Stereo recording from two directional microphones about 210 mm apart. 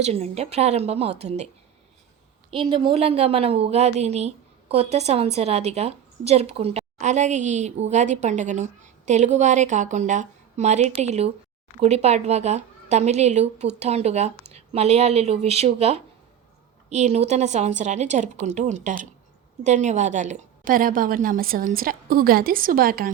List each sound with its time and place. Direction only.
0.0 s a woman's voice: 30° right (ahead or behind)
2.5 s a woman's voice: 25° right (ahead or behind); by 23.1 s 45° right (ahead or behind)